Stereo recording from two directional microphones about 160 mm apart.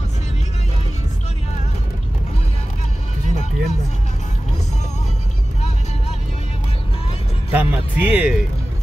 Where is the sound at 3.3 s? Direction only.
45° left (ahead or behind).